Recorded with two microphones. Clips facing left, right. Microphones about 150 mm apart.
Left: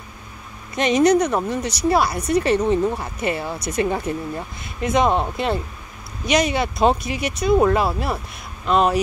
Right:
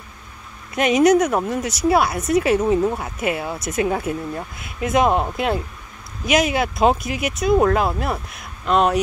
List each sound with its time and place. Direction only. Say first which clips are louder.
0.7 s speech: right 1 dB; 5° right (ahead or behind)